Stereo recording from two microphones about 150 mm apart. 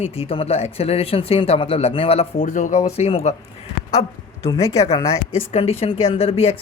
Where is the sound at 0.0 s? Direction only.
40° left (ahead or behind).